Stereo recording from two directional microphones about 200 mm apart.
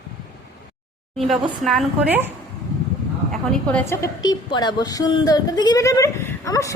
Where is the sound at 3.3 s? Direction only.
5° left (ahead or behind).